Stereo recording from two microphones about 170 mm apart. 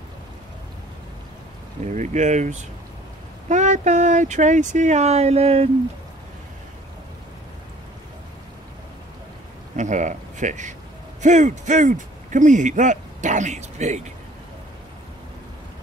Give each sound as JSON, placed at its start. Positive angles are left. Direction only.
{"t": 1.9, "sound": "speech", "side_deg": -45}
{"t": 9.8, "sound": "speech", "side_deg": -45}